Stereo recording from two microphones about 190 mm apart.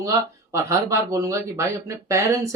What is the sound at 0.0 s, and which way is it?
Speech, 15° right (ahead or behind).